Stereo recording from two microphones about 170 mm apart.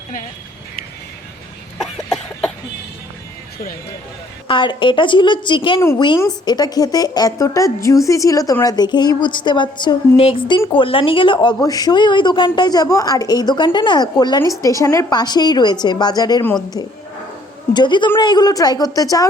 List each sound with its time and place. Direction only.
1.8 s cough: centre (ahead or behind)
4.4 s a woman's voice: 30° left (ahead or behind)
16.4 s a woman's voice: 10° left (ahead or behind)
17.7 s a woman's voice: 25° left (ahead or behind)